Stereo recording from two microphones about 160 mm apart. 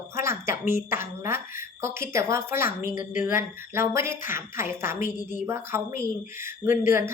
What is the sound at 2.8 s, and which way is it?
Speech, 60° left (ahead or behind).